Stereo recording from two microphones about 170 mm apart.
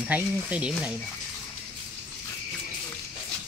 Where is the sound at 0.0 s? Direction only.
10° right (ahead or behind).